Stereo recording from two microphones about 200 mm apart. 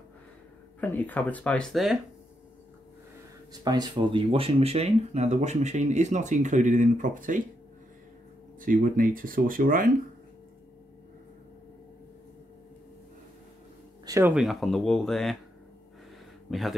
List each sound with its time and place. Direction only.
0.7 s speech: 10° left (ahead or behind)
3.6 s speech: 20° right (ahead or behind); by 7.4 s 40° right (ahead or behind)
8.5 s speech: 45° right (ahead or behind)
14.0 s a sound: 15° right (ahead or behind)
14.3 s speech: centre (ahead or behind)
16.4 s speech: centre (ahead or behind)